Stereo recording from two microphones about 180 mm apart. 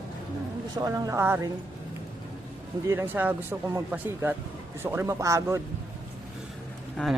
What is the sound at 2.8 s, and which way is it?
Speech, 10° right (ahead or behind).